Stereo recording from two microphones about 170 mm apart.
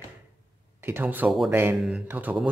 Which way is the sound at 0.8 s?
10° right (ahead or behind).